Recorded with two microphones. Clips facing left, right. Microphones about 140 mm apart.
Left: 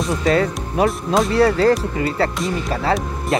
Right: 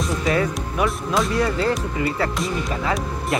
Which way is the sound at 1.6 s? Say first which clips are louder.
Left 6 dB; 45° left (ahead or behind).